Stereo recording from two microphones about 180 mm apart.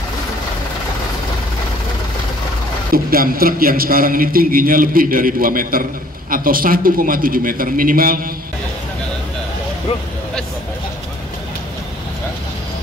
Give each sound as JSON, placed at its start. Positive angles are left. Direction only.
{"t": 2.9, "sound": "a man's voice", "side_deg": -55}